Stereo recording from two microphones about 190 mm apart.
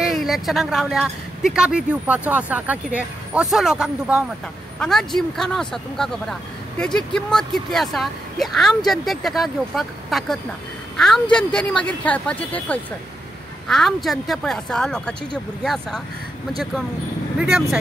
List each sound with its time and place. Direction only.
0.0 s a woman's voice: centre (ahead or behind)
17.4 s speech: centre (ahead or behind)